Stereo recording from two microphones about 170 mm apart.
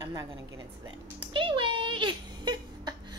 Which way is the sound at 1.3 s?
30° right (ahead or behind).